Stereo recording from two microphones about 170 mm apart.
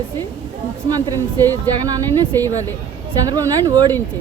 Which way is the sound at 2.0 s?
10° left (ahead or behind).